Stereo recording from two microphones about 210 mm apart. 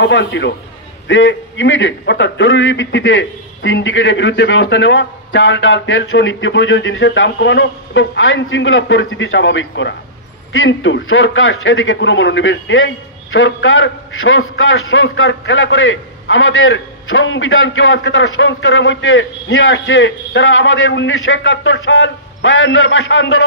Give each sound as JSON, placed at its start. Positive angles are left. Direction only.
{"t": 0.0, "sound": "a man's voice", "side_deg": 60}